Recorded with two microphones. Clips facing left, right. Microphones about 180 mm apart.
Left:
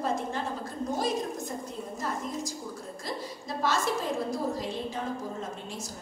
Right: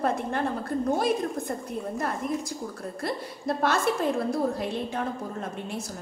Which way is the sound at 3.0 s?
60° right (ahead or behind).